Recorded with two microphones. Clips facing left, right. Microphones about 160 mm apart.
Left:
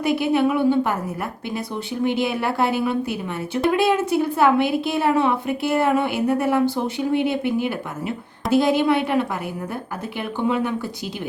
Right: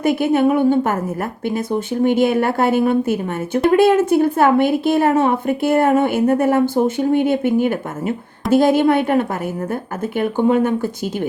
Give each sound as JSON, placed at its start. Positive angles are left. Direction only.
{"t": 0.0, "sound": "a woman's voice", "side_deg": -50}